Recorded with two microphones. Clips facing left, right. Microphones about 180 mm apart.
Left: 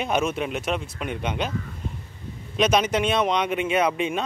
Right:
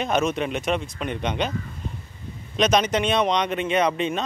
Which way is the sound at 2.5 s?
5° left (ahead or behind).